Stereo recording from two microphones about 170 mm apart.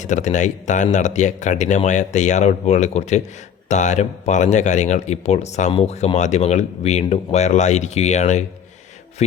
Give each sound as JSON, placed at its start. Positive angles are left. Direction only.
{"t": 0.0, "sound": "speech", "side_deg": 45}